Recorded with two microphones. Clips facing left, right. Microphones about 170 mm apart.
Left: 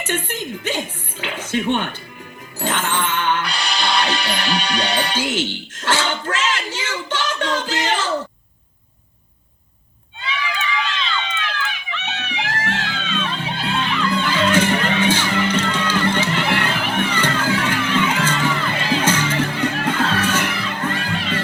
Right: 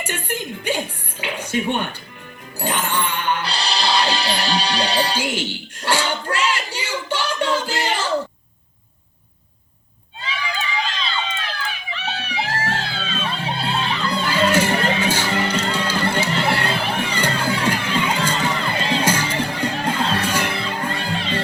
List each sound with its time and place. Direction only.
0.0 s a woman's voice: 10° right (ahead or behind)
2.6 s music: 10° right (ahead or behind)
3.2 s music: 30° right (ahead or behind)
5.2 s a sound: 10° right (ahead or behind)
10.2 s a sound: 35° right (ahead or behind)
14.3 s music: 10° right (ahead or behind)
14.7 s music: 30° right (ahead or behind)
15.0 s music: 10° right (ahead or behind)
15.3 s music: 30° right (ahead or behind)
16.3 s crowd: 30° right (ahead or behind)
19.0 s music: 10° right (ahead or behind)
19.3 s music: 35° right (ahead or behind)